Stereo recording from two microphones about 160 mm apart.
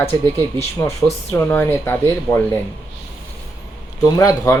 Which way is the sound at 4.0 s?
20° left (ahead or behind).